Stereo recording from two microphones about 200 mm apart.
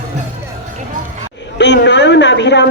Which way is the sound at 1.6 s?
60° left (ahead or behind).